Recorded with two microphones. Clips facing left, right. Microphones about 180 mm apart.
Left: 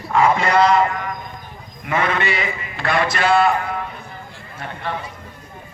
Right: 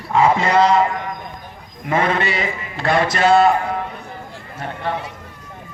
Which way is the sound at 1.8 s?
30° right (ahead or behind).